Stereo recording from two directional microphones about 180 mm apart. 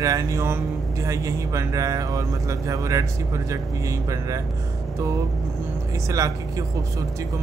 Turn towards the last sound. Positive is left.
turn(degrees=-20)  # may be behind; listen again after turning